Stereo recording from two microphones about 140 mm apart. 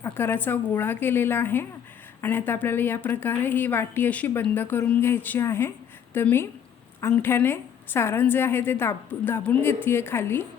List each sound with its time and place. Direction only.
0.0 s a woman's voice: 15° left (ahead or behind)